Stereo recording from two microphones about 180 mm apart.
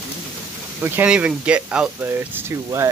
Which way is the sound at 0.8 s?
10° right (ahead or behind).